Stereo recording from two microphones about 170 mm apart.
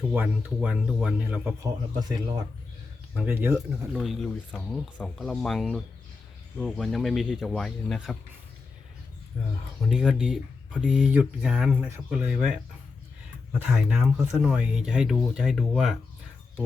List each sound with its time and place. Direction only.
0.1 s speech: 10° right (ahead or behind)
1.6 s speech: 25° right (ahead or behind)
3.2 s speech: 10° right (ahead or behind)
3.9 s speech: centre (ahead or behind)
9.8 s speech: 5° right (ahead or behind)